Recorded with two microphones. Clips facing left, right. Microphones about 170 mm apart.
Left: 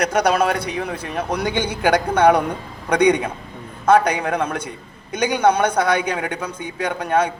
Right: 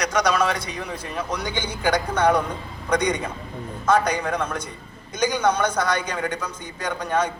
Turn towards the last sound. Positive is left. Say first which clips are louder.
# left 4 dB
turn(degrees=60)  # may be behind; listen again after turning